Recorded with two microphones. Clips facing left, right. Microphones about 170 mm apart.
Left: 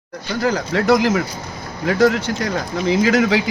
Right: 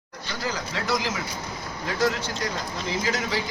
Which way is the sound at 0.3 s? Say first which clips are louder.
Left 11 dB; 60° left (ahead or behind).